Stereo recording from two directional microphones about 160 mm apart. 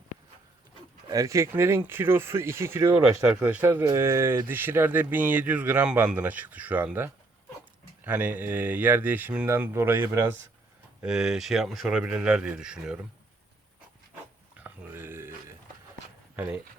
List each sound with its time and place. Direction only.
1.0 s speech: 20° right (ahead or behind)
11.0 s speech: 5° right (ahead or behind)
14.6 s a sound: 15° right (ahead or behind)
16.3 s speech: 10° right (ahead or behind)